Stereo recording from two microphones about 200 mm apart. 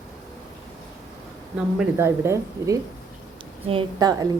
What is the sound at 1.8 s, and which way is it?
A woman's voice, 15° right (ahead or behind).